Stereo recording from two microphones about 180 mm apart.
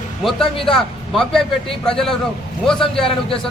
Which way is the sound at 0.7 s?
Centre (ahead or behind).